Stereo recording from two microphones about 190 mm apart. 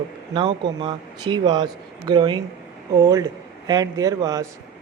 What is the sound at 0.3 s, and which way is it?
Speech, 25° right (ahead or behind).